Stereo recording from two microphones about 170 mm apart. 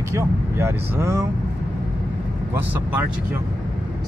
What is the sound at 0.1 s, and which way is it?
Speech, 15° right (ahead or behind).